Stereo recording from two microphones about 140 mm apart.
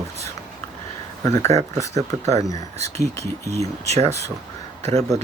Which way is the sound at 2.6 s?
50° right (ahead or behind).